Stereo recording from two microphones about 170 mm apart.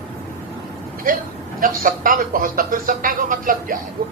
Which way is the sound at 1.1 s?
55° right (ahead or behind).